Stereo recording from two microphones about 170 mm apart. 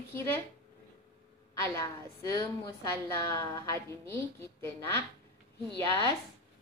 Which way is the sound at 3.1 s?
15° left (ahead or behind).